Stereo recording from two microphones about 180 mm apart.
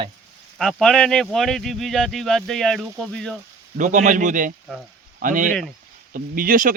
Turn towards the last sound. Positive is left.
turn(degrees=-50)  # may be behind; listen again after turning